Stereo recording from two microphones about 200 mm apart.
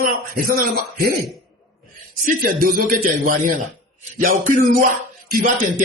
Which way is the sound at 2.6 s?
45° right (ahead or behind).